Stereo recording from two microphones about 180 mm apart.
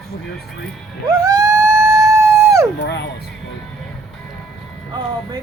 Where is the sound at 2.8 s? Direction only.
70° left (ahead or behind).